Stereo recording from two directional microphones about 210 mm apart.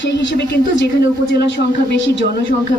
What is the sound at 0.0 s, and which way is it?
Speech, 60° left (ahead or behind).